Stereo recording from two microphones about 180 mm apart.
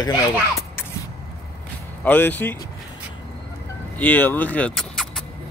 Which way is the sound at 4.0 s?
10° left (ahead or behind).